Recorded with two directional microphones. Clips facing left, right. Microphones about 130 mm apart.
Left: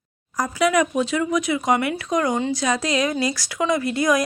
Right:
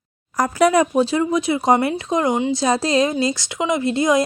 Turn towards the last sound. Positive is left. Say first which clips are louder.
# right 2 dB
turn(degrees=-25)  # may be behind; listen again after turning